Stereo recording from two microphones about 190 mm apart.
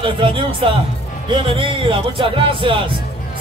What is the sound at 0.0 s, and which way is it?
Speech, 30° right (ahead or behind).